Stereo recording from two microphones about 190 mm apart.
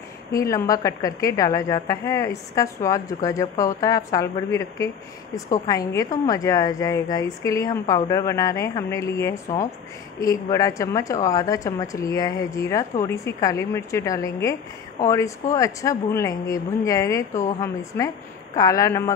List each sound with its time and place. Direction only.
0.3 s a woman's voice: 15° left (ahead or behind)